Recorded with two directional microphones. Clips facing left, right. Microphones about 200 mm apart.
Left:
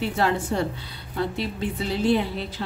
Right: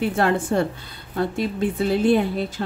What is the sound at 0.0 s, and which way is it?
A woman's voice, 55° right (ahead or behind).